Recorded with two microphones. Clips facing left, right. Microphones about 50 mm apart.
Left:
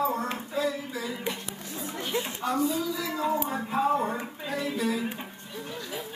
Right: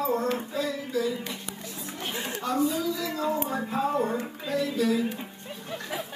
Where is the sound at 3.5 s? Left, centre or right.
Centre.